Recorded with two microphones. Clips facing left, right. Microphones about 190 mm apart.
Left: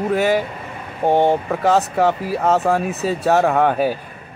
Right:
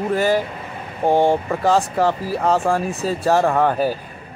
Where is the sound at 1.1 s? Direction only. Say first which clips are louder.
Even; 20° left (ahead or behind).